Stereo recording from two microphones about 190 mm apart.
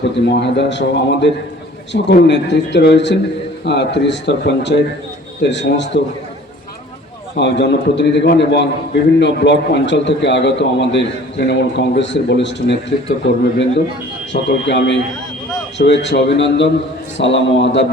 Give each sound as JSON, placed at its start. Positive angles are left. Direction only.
{"t": 0.0, "sound": "a man's voice", "side_deg": 65}
{"t": 7.3, "sound": "a man's voice", "side_deg": 65}
{"t": 14.3, "sound": "speech", "side_deg": 45}
{"t": 14.7, "sound": "a man's voice", "side_deg": 70}
{"t": 16.0, "sound": "a man's voice", "side_deg": 70}